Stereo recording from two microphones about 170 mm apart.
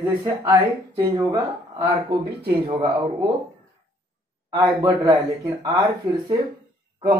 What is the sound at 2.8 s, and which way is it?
Speech, 25° right (ahead or behind).